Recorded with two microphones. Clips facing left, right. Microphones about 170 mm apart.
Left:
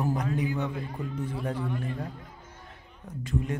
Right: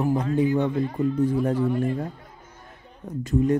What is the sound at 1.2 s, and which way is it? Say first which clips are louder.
Speech: right 10 dB; 40° right (ahead or behind).